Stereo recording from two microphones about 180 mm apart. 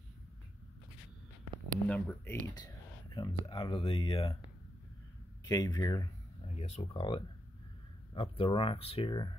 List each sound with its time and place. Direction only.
1.9 s speech: 10° left (ahead or behind)
3.2 s speech: 25° left (ahead or behind)
5.4 s speech: 20° left (ahead or behind)
6.4 s speech: 35° left (ahead or behind)